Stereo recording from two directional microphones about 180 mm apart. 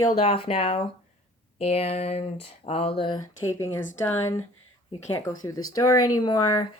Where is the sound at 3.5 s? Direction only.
15° left (ahead or behind).